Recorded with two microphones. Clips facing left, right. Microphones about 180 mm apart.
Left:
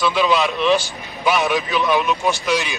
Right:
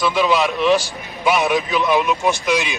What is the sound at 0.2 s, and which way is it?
A man's voice, 5° right (ahead or behind).